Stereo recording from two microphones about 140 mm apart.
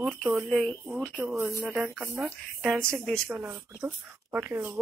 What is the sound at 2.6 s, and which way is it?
Speech, 5° left (ahead or behind).